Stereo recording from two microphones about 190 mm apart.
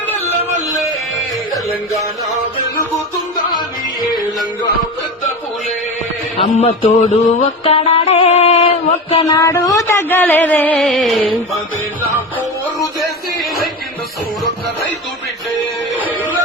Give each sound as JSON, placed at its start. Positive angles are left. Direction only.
{"t": 6.3, "sound": "music", "side_deg": 30}
{"t": 9.2, "sound": "speech", "side_deg": 15}
{"t": 12.8, "sound": "music", "side_deg": 0}